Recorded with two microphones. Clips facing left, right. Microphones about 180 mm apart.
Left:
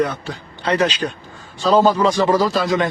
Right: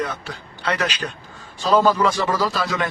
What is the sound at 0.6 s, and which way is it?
Speech, 30° left (ahead or behind).